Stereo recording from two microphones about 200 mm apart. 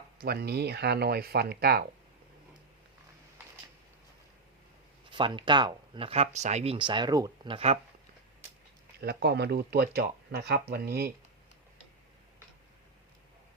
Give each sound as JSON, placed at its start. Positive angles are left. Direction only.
{"t": 0.2, "sound": "speech", "side_deg": -50}
{"t": 5.1, "sound": "speech", "side_deg": -25}
{"t": 9.0, "sound": "speech", "side_deg": -55}